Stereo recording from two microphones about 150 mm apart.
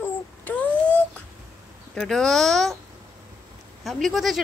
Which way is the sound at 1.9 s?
5° left (ahead or behind).